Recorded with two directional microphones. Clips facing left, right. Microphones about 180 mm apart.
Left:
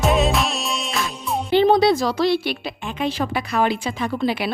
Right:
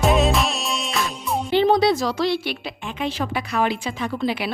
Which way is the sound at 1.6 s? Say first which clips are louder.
Left 2 dB; 30° left (ahead or behind).